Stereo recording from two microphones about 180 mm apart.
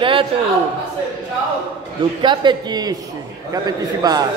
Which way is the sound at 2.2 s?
25° right (ahead or behind).